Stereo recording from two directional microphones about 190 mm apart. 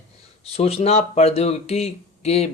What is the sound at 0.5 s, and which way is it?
Speech, 30° left (ahead or behind).